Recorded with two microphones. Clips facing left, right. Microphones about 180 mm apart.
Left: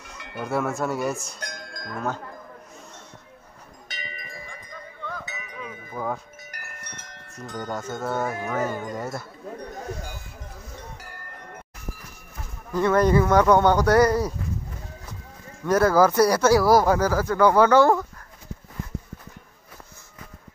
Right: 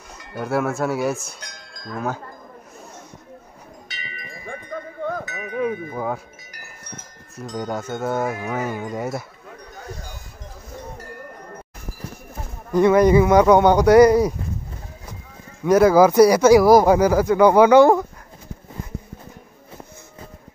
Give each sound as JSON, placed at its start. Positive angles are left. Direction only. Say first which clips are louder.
{"t": 0.4, "sound": "speech", "louder": "right 4 dB", "side_deg": -5}
{"t": 1.4, "sound": "livestock", "louder": "left 5 dB", "side_deg": 50}
{"t": 1.9, "sound": "speech", "louder": "right 3 dB", "side_deg": -5}
{"t": 3.9, "sound": "tubular bells", "louder": "left 2 dB", "side_deg": 40}
{"t": 4.6, "sound": "cowbell", "louder": "right 11 dB", "side_deg": -45}
{"t": 5.9, "sound": "speech", "louder": "right 3 dB", "side_deg": -10}
{"t": 6.5, "sound": "wind chime", "louder": "right 4 dB", "side_deg": 65}
{"t": 7.4, "sound": "speech", "louder": "right 4 dB", "side_deg": -15}
{"t": 9.8, "sound": "a sound", "louder": "right 2 dB", "side_deg": -35}
{"t": 12.7, "sound": "speech", "louder": "right 5 dB", "side_deg": -15}
{"t": 15.6, "sound": "speech", "louder": "right 5 dB", "side_deg": -15}